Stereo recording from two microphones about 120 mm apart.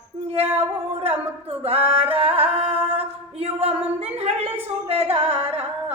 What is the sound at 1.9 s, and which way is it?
Music, 55° right (ahead or behind).